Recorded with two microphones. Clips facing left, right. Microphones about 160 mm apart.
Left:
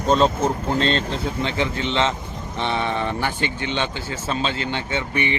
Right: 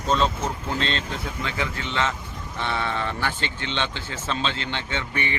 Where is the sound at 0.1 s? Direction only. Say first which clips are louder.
Left 5 dB; 40° left (ahead or behind).